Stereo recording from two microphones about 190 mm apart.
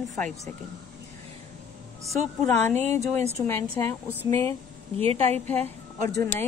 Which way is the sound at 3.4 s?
10° left (ahead or behind).